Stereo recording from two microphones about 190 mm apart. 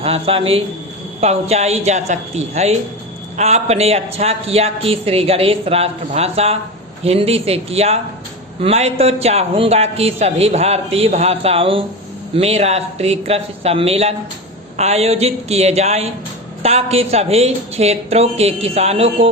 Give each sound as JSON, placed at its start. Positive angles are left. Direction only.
{"t": 0.0, "sound": "a man's voice", "side_deg": -30}